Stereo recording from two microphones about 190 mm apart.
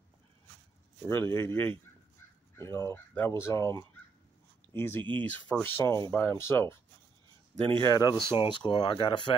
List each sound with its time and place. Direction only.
1.0 s speech: 15° left (ahead or behind)
7.8 s speech: 20° left (ahead or behind)